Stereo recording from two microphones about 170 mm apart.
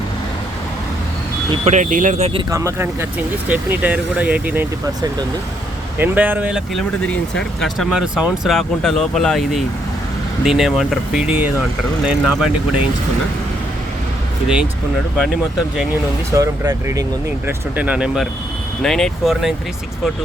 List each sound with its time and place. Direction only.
1.5 s speech: 40° right (ahead or behind)
2.5 s speech: 15° right (ahead or behind)
6.0 s speech: 10° right (ahead or behind)
14.4 s speech: 5° right (ahead or behind)
16.3 s speech: 20° right (ahead or behind)
17.7 s speech: 5° right (ahead or behind)